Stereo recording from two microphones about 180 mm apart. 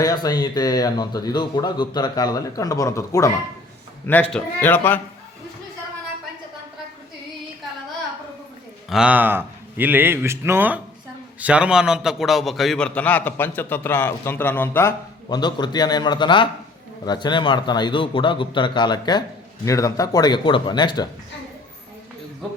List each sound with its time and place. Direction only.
0.0 s a man's voice: 20° left (ahead or behind)
8.9 s a man's voice: 5° right (ahead or behind); by 21.1 s 25° left (ahead or behind)